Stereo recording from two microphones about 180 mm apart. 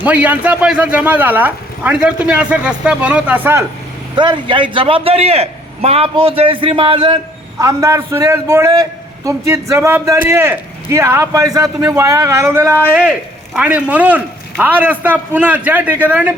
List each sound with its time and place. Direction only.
0.0 s a man's voice: 10° right (ahead or behind)
4.1 s a man's voice: 25° right (ahead or behind)
7.6 s a man's voice: 15° right (ahead or behind)